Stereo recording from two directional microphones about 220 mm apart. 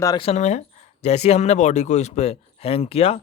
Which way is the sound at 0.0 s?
15° left (ahead or behind).